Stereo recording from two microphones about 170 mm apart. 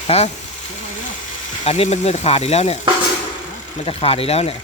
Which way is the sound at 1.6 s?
40° left (ahead or behind).